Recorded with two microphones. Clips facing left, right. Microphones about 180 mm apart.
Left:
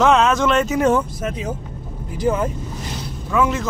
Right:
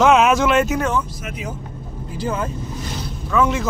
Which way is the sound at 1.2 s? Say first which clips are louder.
Left 5 dB; 30° left (ahead or behind).